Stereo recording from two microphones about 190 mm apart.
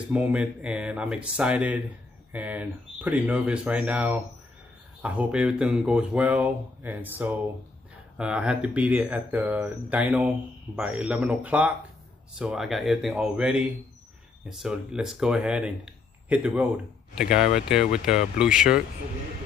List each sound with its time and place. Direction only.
0.1 s speech: 10° right (ahead or behind)